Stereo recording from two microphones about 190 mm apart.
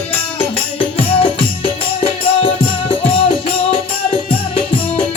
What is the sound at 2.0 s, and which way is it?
Music, 30° left (ahead or behind).